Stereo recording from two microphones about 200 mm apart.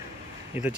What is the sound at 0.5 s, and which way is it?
Speech, 10° right (ahead or behind).